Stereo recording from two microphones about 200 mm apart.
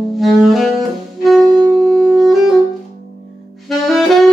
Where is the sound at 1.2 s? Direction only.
Centre (ahead or behind).